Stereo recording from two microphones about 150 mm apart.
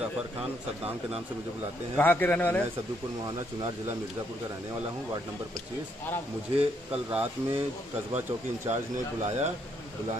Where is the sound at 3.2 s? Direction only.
25° right (ahead or behind).